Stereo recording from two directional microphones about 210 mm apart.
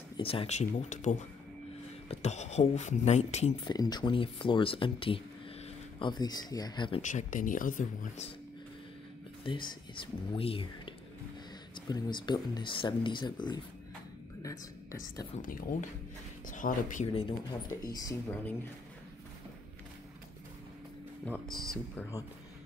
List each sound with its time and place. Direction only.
0.2 s speech: 25° left (ahead or behind)
3.6 s speech: 20° left (ahead or behind)
7.0 s speech: 35° left (ahead or behind)
9.4 s a woman's voice: 20° left (ahead or behind)
16.4 s speech: 40° left (ahead or behind)
17.5 s speech: 15° left (ahead or behind)
21.3 s speech: centre (ahead or behind)